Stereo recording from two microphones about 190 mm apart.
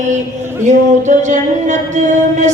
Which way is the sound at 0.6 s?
40° right (ahead or behind).